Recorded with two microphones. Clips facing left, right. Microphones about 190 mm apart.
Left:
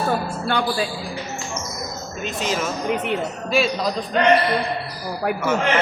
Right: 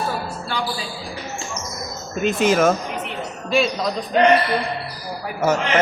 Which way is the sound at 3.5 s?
Centre (ahead or behind).